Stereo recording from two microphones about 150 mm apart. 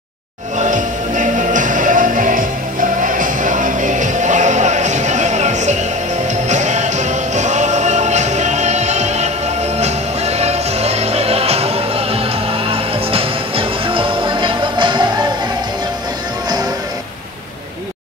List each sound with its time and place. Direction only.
0.6 s music: 55° right (ahead or behind); by 15.0 s 30° right (ahead or behind)